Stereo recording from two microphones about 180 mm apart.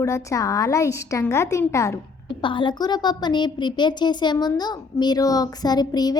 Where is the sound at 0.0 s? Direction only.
15° left (ahead or behind).